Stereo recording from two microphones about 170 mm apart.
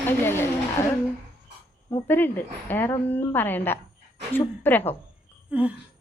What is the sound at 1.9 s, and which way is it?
A woman's voice, 10° left (ahead or behind).